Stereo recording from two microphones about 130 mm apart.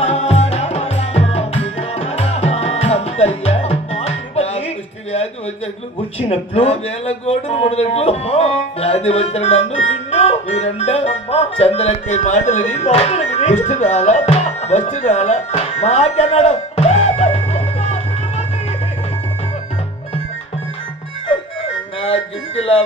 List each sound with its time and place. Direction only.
0.0 s music: 55° left (ahead or behind)
6.1 s a man's voice: 50° left (ahead or behind)